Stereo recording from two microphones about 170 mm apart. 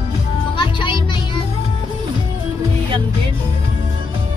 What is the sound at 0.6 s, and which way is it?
Music, 30° left (ahead or behind).